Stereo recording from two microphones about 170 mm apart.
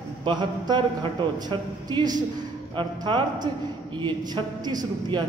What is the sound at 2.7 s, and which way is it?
A man's voice, 25° right (ahead or behind).